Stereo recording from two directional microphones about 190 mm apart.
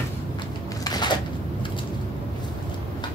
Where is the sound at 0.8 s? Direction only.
20° left (ahead or behind).